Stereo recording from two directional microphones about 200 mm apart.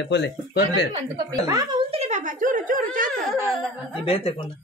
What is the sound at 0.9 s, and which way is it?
A woman's voice, 20° right (ahead or behind).